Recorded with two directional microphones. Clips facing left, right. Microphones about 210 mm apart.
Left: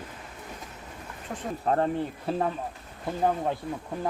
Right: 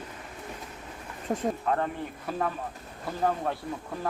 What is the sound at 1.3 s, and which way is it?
Speech, 40° right (ahead or behind).